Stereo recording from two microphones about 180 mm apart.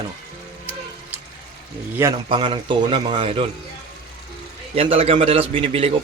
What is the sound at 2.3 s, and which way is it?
A man's voice, 30° right (ahead or behind).